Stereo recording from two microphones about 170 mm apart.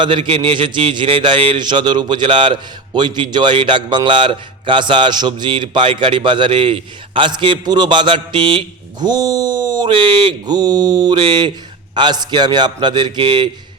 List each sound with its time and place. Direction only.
0.0 s a man's voice: 30° right (ahead or behind)